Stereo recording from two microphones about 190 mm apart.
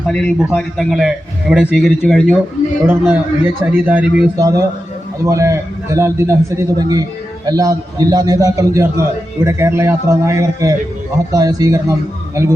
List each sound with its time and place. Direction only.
0.1 s a man's voice: 5° left (ahead or behind)
3.1 s a man's voice: 10° right (ahead or behind)